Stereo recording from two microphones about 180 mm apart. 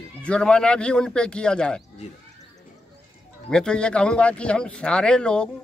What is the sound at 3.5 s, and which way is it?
Speech, 5° left (ahead or behind).